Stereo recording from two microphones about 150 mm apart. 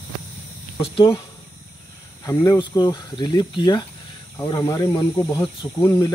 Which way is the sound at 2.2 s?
25° left (ahead or behind).